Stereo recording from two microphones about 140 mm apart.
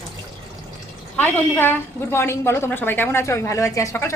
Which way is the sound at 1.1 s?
15° left (ahead or behind).